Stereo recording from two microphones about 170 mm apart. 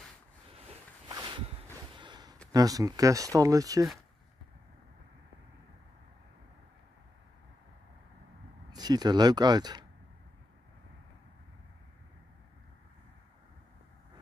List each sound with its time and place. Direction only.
0.7 s a sound: 30° right (ahead or behind)
2.5 s speech: 20° right (ahead or behind)
8.7 s speech: 25° right (ahead or behind)